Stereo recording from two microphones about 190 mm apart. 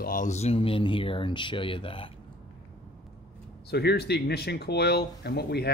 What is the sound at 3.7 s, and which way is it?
Speech, 60° left (ahead or behind).